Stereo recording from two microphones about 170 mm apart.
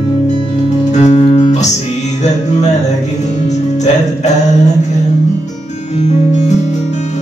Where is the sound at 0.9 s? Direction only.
35° left (ahead or behind).